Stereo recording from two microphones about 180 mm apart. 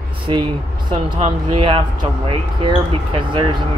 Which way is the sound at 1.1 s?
30° right (ahead or behind).